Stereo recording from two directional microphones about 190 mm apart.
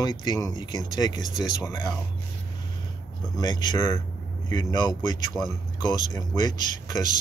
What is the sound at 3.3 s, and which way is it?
Speech, 20° left (ahead or behind).